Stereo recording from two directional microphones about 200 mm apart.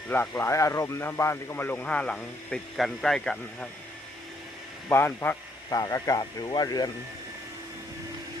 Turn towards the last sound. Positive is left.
turn(degrees=20)  # may be behind; listen again after turning